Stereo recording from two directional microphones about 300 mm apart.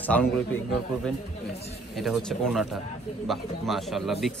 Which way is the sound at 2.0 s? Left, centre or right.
Centre.